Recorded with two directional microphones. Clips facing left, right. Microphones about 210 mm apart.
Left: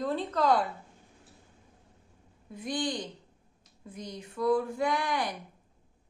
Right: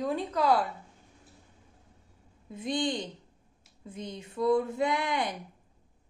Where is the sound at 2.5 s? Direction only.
25° right (ahead or behind).